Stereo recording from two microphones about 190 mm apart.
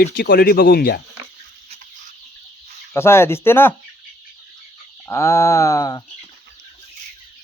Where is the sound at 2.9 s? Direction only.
15° left (ahead or behind).